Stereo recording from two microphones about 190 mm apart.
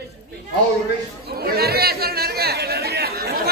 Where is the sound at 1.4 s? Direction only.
55° right (ahead or behind).